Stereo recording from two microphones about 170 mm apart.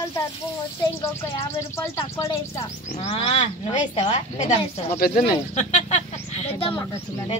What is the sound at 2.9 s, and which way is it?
Speech, 35° left (ahead or behind).